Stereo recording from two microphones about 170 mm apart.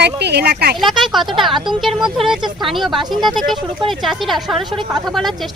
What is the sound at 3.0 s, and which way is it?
Speech, 25° right (ahead or behind).